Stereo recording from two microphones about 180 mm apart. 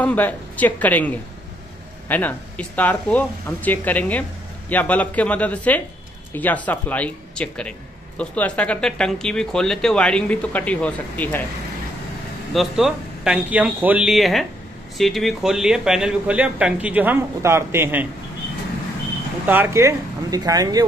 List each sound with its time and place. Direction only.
0.0 s speech: 10° left (ahead or behind)
12.5 s speech: centre (ahead or behind)
19.4 s speech: 10° right (ahead or behind)